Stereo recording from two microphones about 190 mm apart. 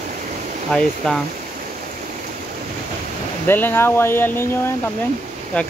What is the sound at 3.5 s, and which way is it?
Speech, 10° left (ahead or behind).